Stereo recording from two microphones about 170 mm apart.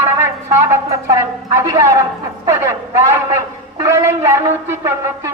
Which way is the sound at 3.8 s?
15° right (ahead or behind).